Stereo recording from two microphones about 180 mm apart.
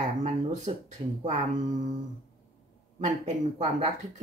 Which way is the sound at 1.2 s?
40° right (ahead or behind).